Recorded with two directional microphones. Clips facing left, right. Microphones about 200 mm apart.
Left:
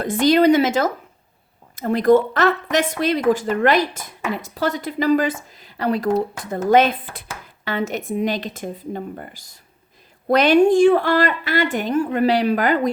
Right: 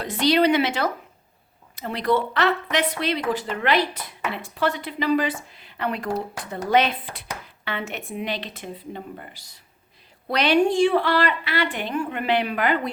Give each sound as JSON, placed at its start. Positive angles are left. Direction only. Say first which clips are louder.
{"t": 0.0, "sound": "speech", "louder": "left 5 dB", "side_deg": 50}